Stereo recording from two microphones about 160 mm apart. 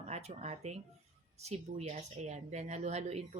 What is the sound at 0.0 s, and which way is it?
Speech, 45° right (ahead or behind).